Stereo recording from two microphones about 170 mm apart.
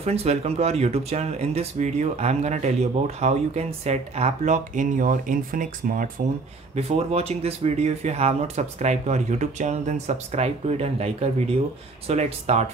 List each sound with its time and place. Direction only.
0.0 s speech: 35° right (ahead or behind); by 6.0 s 55° right (ahead or behind)
6.7 s speech: 35° right (ahead or behind)